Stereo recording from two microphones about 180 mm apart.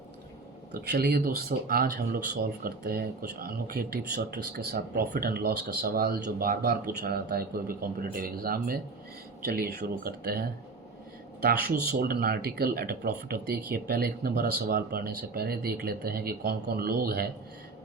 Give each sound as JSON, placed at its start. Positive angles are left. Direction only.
{"t": 0.7, "sound": "speech", "side_deg": -60}
{"t": 11.7, "sound": "speech", "side_deg": -55}